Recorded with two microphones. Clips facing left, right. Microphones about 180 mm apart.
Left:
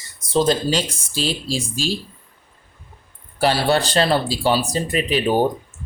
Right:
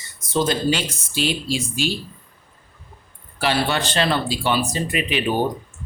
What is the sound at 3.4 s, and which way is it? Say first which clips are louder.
Speech: left 4 dB; 40° left (ahead or behind).